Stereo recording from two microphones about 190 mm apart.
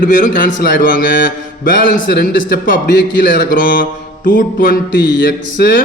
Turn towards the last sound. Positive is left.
turn(degrees=50)  # may be behind; listen again after turning